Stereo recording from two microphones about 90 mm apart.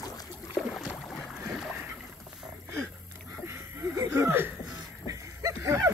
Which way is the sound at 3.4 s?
30° right (ahead or behind).